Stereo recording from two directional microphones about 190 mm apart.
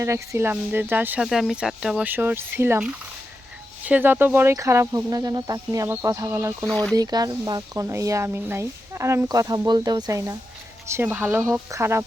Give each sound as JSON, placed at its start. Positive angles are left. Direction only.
{"t": 0.0, "sound": "speech", "side_deg": -15}
{"t": 6.7, "sound": "speech", "side_deg": 5}
{"t": 6.9, "sound": "speech", "side_deg": -20}